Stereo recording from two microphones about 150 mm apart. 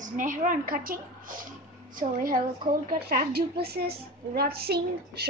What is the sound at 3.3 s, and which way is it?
A woman's voice, 90° right.